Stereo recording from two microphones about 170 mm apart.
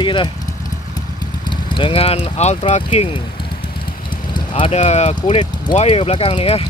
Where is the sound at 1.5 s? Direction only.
30° left (ahead or behind).